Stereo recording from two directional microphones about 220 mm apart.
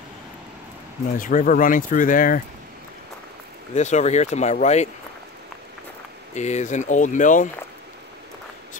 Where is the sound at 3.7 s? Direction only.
30° left (ahead or behind).